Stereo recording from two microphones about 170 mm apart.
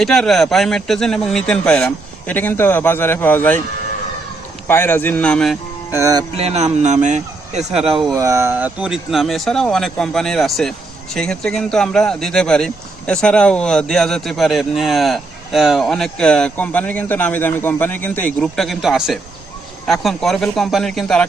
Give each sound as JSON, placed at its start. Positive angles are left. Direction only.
{"t": 0.0, "sound": "speech", "side_deg": 0}
{"t": 4.7, "sound": "speech", "side_deg": 10}
{"t": 5.9, "sound": "speech", "side_deg": -20}
{"t": 6.3, "sound": "speech", "side_deg": -40}
{"t": 7.7, "sound": "speech", "side_deg": 0}
{"t": 8.1, "sound": "speech", "side_deg": -15}